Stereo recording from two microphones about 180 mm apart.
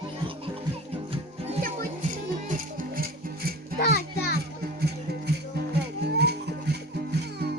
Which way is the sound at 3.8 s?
65° left (ahead or behind).